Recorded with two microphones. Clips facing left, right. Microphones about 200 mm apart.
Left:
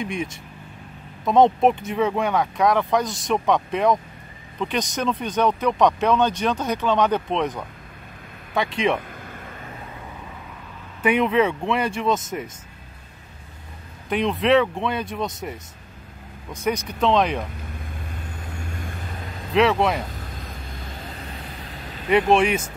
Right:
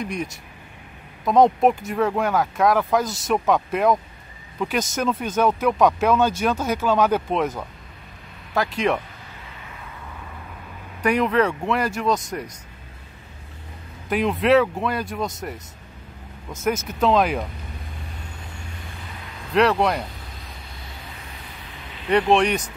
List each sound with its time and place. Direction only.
0.0 s speech: centre (ahead or behind)
9.3 s vehicle: 50° left (ahead or behind)
11.0 s speech: 5° left (ahead or behind)
14.0 s speech: centre (ahead or behind)
16.6 s speech: 5° right (ahead or behind)
19.5 s speech: centre (ahead or behind)
20.4 s vehicle: 50° left (ahead or behind)
22.3 s speech: 5° left (ahead or behind)